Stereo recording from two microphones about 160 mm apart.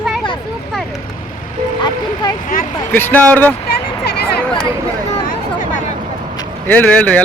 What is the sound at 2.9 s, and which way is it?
Speech, 10° left (ahead or behind).